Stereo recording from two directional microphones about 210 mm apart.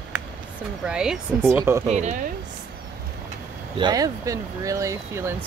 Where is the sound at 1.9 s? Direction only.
35° right (ahead or behind).